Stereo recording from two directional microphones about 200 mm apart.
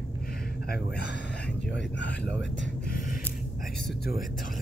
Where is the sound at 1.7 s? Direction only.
60° left (ahead or behind).